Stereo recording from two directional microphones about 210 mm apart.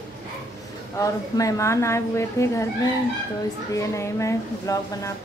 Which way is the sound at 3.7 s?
15° left (ahead or behind).